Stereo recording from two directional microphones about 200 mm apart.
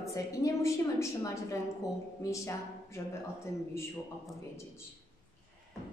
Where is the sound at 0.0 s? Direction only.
15° left (ahead or behind).